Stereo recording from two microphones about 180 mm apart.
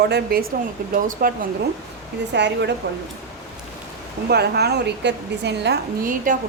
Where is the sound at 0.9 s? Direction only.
50° right (ahead or behind).